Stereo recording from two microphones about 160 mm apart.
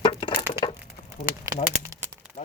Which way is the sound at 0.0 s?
30° left (ahead or behind).